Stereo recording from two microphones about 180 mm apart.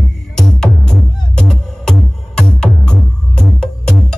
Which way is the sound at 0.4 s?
5° left (ahead or behind).